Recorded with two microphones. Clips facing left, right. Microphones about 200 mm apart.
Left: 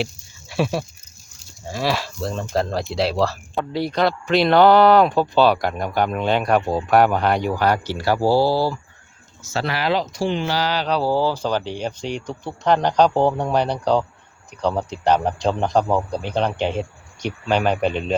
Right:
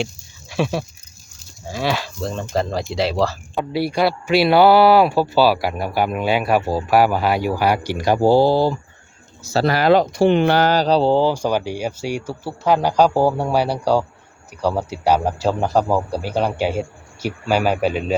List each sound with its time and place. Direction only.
0.0 s speech: centre (ahead or behind); by 8.8 s 20° right (ahead or behind)
9.4 s speech: 35° right (ahead or behind)
10.8 s speech: 30° right (ahead or behind); by 18.0 s 5° right (ahead or behind)